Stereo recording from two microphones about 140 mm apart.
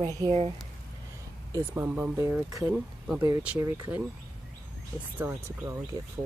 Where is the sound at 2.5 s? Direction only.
25° right (ahead or behind).